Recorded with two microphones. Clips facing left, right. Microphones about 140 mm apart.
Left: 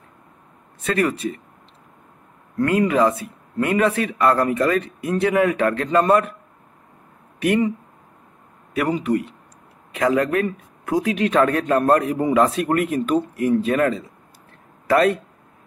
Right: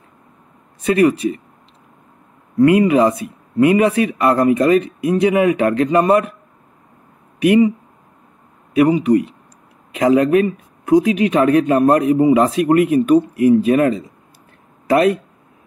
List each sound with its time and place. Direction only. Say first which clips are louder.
0.8 s speech: right 7 dB; 15° right (ahead or behind)
2.5 s speech: right 7 dB; 15° right (ahead or behind)
7.3 s speech: right 7 dB; 15° right (ahead or behind)
8.7 s speech: right 8 dB; 15° right (ahead or behind)